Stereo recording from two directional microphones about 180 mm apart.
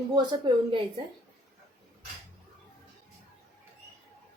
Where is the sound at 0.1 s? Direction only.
25° right (ahead or behind).